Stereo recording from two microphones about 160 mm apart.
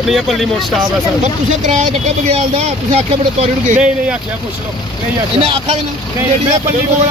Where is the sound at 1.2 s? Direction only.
45° right (ahead or behind).